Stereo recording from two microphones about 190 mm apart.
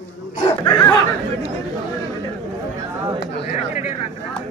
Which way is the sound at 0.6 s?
20° left (ahead or behind).